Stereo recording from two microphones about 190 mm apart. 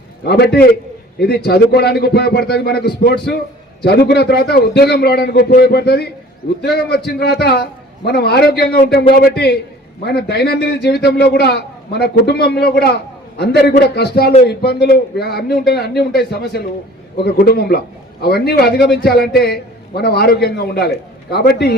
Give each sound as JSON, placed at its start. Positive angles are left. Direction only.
{"t": 0.3, "sound": "a man's voice", "side_deg": 60}